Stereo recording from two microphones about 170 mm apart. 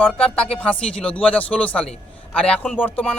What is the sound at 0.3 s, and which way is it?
A man's voice, 5° left (ahead or behind).